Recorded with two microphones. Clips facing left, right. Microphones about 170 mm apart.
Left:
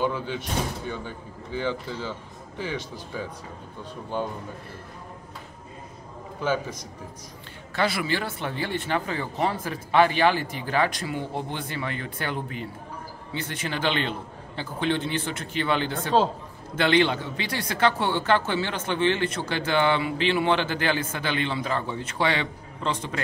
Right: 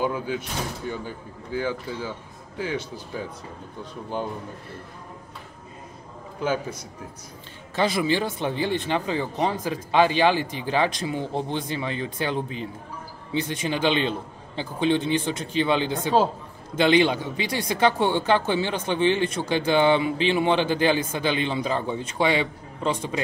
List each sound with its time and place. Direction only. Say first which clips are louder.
0.0 s speech: right 1 dB; 5° right (ahead or behind)
1.6 s speech: even; 10° right (ahead or behind)
7.7 s speech: right 3 dB; 20° right (ahead or behind)